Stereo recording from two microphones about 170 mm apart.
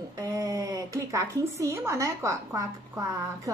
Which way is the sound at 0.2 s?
20° right (ahead or behind).